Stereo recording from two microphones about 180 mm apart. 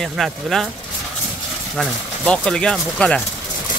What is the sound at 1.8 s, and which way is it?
Speech, 5° left (ahead or behind).